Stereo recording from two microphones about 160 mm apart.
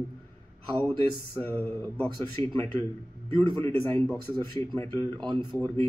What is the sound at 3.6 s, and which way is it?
A man's voice, 15° left (ahead or behind).